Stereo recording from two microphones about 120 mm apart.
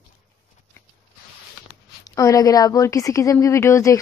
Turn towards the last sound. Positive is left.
turn(degrees=25)  # may be behind; listen again after turning